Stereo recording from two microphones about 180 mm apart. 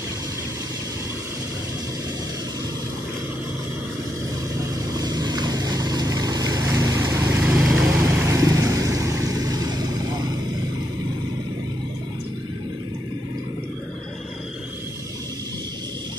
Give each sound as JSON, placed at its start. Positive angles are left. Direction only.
{"t": 4.9, "sound": "vehicle", "side_deg": -25}
{"t": 8.0, "sound": "vehicle", "side_deg": -15}